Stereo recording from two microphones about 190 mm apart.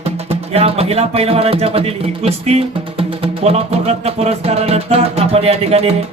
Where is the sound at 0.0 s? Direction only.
30° right (ahead or behind).